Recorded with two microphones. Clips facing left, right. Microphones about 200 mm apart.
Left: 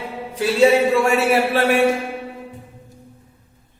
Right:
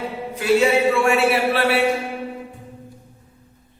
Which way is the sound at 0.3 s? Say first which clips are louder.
Left 2 dB; 35° left (ahead or behind).